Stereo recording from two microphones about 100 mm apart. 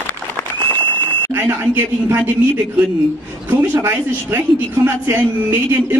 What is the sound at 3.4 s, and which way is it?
Speech, 20° right (ahead or behind).